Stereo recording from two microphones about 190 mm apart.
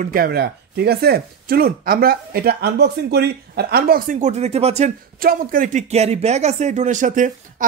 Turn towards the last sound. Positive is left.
turn(degrees=-40)  # may be behind; listen again after turning